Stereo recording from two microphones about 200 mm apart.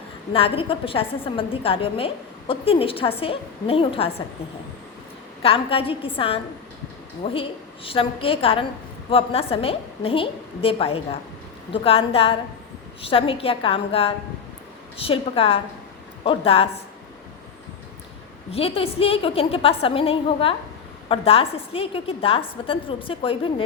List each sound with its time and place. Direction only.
0.3 s a woman's voice: 30° left (ahead or behind)
5.4 s a woman's voice: 30° left (ahead or behind)
18.5 s a woman's voice: 30° left (ahead or behind)